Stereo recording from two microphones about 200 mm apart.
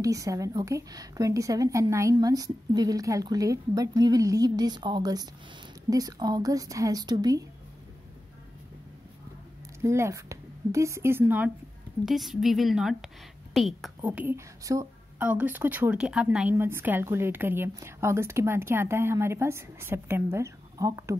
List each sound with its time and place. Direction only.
0.0 s a woman's voice: 15° right (ahead or behind)
9.8 s a woman's voice: 15° right (ahead or behind)